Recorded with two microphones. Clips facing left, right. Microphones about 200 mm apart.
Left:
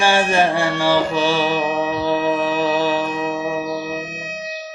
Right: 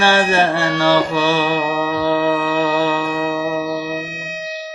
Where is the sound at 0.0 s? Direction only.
15° left (ahead or behind).